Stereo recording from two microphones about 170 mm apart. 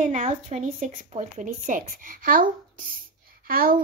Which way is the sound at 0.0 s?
45° right (ahead or behind).